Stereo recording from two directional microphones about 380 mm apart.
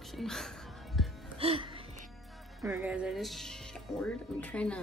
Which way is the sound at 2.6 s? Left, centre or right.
Centre.